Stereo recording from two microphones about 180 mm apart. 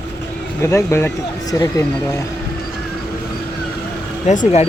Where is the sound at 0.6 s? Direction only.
15° left (ahead or behind).